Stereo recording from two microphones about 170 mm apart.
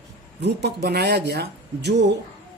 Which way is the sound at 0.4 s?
75° right (ahead or behind).